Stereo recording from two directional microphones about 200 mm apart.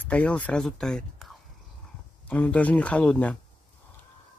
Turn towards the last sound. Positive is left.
turn(degrees=5)  # may be behind; listen again after turning